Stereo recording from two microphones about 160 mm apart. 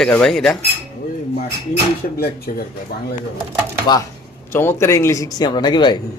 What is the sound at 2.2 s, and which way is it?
Speech, 70° left (ahead or behind).